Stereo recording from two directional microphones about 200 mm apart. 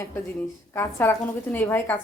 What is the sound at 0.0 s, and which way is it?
A woman's voice, 10° left (ahead or behind).